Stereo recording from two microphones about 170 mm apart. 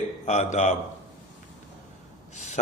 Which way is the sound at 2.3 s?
45° left (ahead or behind).